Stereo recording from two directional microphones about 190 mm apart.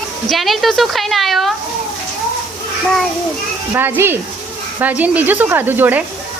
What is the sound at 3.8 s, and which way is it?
Speech, 10° right (ahead or behind).